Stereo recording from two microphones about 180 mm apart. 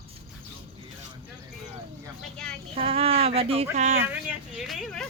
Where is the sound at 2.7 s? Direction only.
35° right (ahead or behind).